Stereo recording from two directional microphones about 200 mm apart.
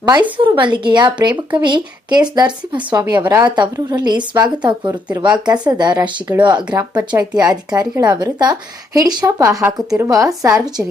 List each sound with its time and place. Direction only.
0.0 s speech: 20° right (ahead or behind)